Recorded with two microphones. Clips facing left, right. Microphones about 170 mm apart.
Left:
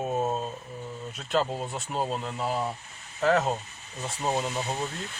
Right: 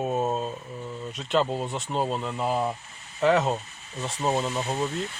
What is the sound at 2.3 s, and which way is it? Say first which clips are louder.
Speech: right 3 dB; 45° right (ahead or behind).